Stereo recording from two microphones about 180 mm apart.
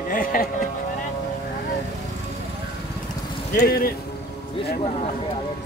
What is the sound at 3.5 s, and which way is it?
Speech, 55° left (ahead or behind).